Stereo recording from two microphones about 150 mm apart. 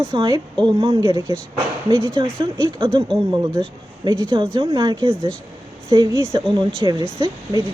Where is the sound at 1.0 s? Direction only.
20° right (ahead or behind).